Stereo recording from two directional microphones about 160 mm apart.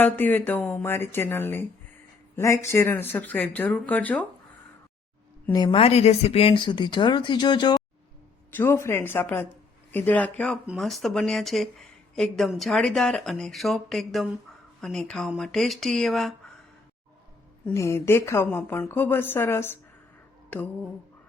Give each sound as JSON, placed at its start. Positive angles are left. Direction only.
{"t": 0.0, "sound": "speech", "side_deg": 10}
{"t": 5.5, "sound": "speech", "side_deg": 25}
{"t": 5.8, "sound": "speech", "side_deg": 40}
{"t": 8.5, "sound": "speech", "side_deg": 15}
{"t": 17.7, "sound": "speech", "side_deg": 15}
{"t": 20.5, "sound": "a sound", "side_deg": 10}